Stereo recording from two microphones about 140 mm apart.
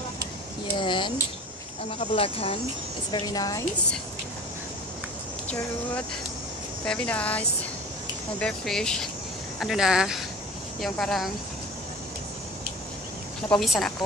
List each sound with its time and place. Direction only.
0.7 s speech: 35° left (ahead or behind)
3.1 s a woman's voice: 30° left (ahead or behind)
6.8 s speech: 10° left (ahead or behind)
13.5 s speech: centre (ahead or behind)